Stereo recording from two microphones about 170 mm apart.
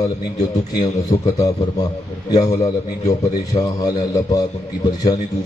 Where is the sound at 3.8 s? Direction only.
20° left (ahead or behind).